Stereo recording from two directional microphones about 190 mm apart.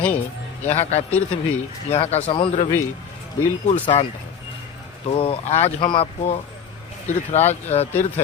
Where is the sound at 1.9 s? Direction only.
35° left (ahead or behind).